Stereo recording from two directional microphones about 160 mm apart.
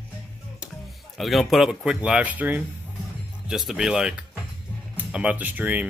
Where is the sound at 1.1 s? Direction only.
Centre (ahead or behind).